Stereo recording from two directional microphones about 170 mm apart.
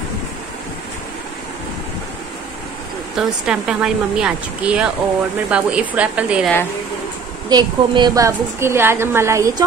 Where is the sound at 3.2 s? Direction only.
5° right (ahead or behind).